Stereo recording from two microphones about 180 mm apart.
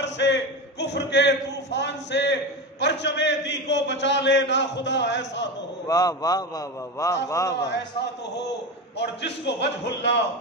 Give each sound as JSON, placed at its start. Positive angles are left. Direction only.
{"t": 0.0, "sound": "a sound", "side_deg": 75}
{"t": 2.8, "sound": "a man's voice", "side_deg": 75}
{"t": 5.9, "sound": "a man's voice", "side_deg": 20}
{"t": 8.9, "sound": "a man's voice", "side_deg": 70}